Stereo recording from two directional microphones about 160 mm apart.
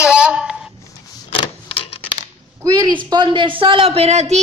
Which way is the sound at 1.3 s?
35° left (ahead or behind).